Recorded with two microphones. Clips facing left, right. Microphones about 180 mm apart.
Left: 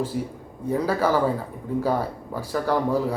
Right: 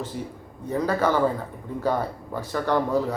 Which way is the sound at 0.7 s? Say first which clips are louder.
Left 1 dB; 10° left (ahead or behind).